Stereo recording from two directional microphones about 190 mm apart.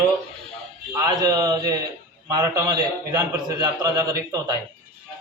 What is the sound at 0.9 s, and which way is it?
A man's voice, 15° right (ahead or behind).